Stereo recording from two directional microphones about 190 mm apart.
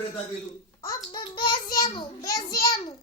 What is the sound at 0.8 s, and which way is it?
Child singing, 20° left (ahead or behind).